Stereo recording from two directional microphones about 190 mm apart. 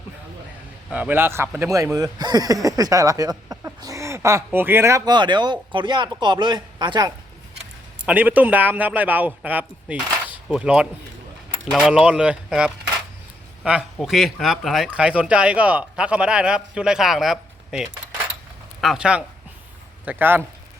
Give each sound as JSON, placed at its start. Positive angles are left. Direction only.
{"t": 0.9, "sound": "speech", "side_deg": -5}
{"t": 8.0, "sound": "speech", "side_deg": -10}